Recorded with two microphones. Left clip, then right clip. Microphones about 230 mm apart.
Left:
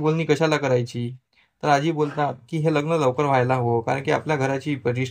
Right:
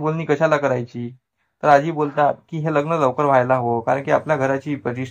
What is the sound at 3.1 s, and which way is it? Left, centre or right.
Speech, left.